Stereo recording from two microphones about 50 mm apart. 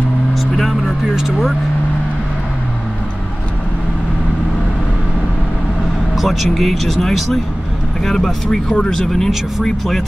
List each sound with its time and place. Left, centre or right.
0.3 s vehicle: centre
6.1 s speech: centre
8.6 s speech: left
8.9 s speech: centre